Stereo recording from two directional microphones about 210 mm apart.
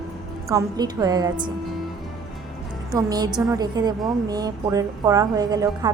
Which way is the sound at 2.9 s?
20° right (ahead or behind).